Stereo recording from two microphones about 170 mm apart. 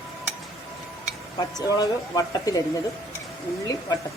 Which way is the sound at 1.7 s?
20° left (ahead or behind).